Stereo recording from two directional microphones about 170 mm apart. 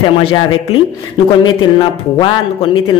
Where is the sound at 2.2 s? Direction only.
30° left (ahead or behind).